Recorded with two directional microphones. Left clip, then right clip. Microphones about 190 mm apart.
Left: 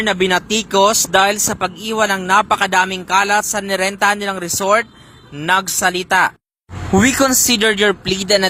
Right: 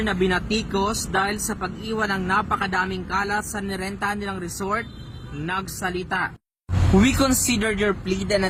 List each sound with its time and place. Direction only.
0.0 s speech: 40° left (ahead or behind)
6.9 s speech: 40° left (ahead or behind)